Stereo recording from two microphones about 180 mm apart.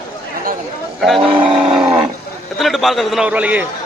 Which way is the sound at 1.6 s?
5° right (ahead or behind).